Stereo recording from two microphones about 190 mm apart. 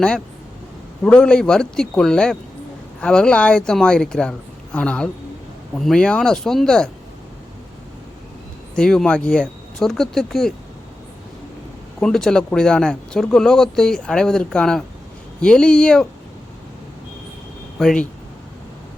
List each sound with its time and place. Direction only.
1.0 s speech: 5° left (ahead or behind)
8.7 s speech: 5° left (ahead or behind)
11.9 s speech: 5° left (ahead or behind)
17.7 s speech: 5° left (ahead or behind)